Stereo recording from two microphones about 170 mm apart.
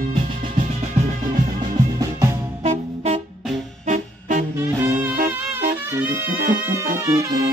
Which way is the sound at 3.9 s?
50° right (ahead or behind).